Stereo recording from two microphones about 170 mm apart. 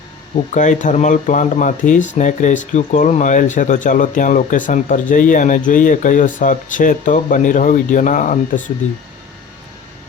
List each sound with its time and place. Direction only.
0.5 s speech: 45° left (ahead or behind)